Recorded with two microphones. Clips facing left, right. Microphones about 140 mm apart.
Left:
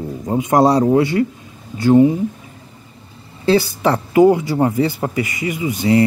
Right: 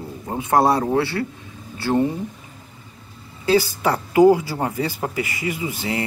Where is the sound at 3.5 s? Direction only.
25° left (ahead or behind).